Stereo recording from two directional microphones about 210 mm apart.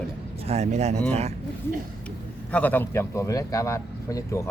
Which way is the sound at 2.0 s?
5° left (ahead or behind).